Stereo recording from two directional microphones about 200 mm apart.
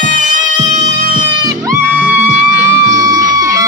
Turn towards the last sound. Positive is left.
turn(degrees=-15)  # may be behind; listen again after turning